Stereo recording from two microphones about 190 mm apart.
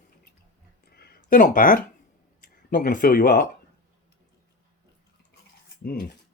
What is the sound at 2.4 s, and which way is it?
Speech, 50° left (ahead or behind).